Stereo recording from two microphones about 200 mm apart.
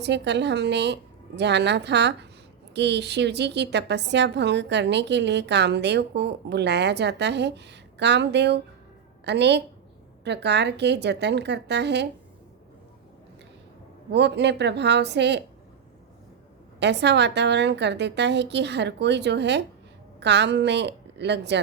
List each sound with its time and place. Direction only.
0.0 s a woman's voice: 60° right (ahead or behind)
14.1 s a woman's voice: 60° right (ahead or behind)
16.8 s a woman's voice: 60° right (ahead or behind)